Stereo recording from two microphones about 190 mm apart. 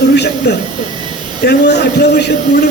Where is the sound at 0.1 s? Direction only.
60° left (ahead or behind).